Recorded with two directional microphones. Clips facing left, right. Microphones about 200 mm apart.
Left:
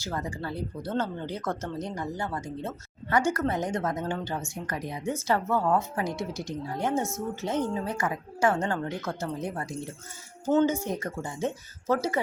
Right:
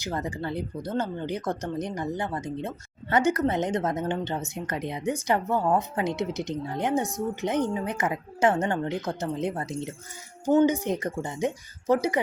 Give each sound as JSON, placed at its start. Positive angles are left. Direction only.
{"t": 0.0, "sound": "speech", "side_deg": -20}